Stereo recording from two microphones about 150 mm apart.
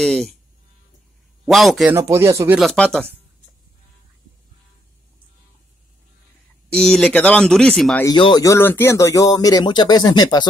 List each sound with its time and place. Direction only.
0.0 s speech: centre (ahead or behind)
1.4 s speech: centre (ahead or behind)
1.9 s speech: 15° right (ahead or behind)
2.6 s speech: 5° left (ahead or behind)
6.7 s speech: 5° left (ahead or behind)
8.2 s speech: 25° left (ahead or behind)